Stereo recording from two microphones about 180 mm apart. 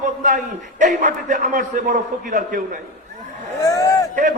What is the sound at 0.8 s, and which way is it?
A man's voice, 45° right (ahead or behind).